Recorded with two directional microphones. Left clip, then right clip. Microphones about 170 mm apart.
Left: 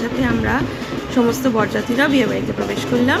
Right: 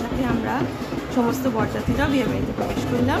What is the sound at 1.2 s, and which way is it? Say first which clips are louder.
A woman's voice: left 6 dB; 10° left (ahead or behind).